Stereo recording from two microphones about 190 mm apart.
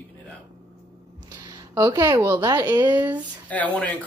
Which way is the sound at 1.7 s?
15° right (ahead or behind).